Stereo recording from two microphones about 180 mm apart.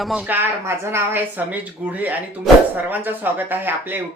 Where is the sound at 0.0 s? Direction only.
5° right (ahead or behind).